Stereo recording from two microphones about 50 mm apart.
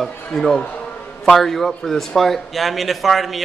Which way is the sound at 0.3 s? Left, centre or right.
Centre.